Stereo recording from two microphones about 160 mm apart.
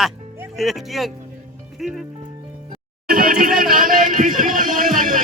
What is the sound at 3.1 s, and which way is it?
Speech, 60° right (ahead or behind).